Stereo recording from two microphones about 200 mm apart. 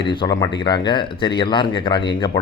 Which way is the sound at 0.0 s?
25° left (ahead or behind).